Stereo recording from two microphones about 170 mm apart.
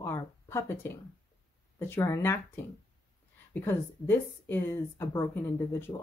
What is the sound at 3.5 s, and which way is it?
Speech, 10° left (ahead or behind).